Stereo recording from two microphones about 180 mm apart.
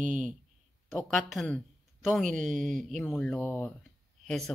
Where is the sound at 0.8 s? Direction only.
Centre (ahead or behind).